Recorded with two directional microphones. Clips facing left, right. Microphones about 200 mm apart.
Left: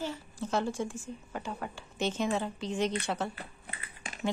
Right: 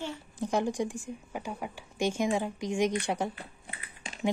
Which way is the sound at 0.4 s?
15° right (ahead or behind).